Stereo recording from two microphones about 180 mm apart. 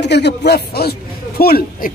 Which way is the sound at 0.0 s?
70° left (ahead or behind).